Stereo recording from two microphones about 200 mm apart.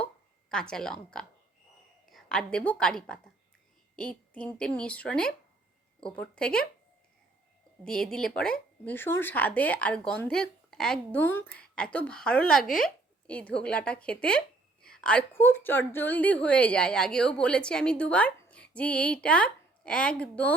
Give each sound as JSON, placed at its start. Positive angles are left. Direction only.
{"t": 0.5, "sound": "a woman's voice", "side_deg": 5}
{"t": 7.9, "sound": "speech", "side_deg": 5}